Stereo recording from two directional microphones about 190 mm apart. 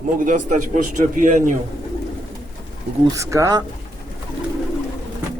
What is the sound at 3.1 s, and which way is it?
Speech, 15° right (ahead or behind).